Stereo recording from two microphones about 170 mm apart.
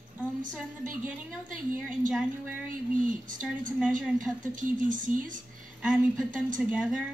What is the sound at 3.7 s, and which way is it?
Speech, 5° right (ahead or behind).